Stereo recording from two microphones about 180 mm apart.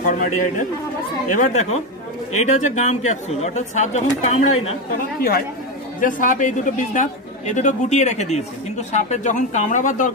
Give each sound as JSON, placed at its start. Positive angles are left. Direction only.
{"t": 0.0, "sound": "a man's voice", "side_deg": 45}
{"t": 5.9, "sound": "a man's voice", "side_deg": 45}